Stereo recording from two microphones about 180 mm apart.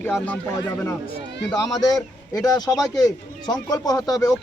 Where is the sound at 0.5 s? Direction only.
15° left (ahead or behind).